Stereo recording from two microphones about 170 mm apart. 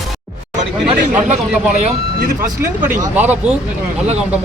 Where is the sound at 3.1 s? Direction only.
10° right (ahead or behind).